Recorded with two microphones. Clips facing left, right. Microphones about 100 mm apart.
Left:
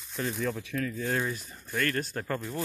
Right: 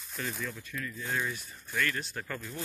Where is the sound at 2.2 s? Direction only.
35° left (ahead or behind).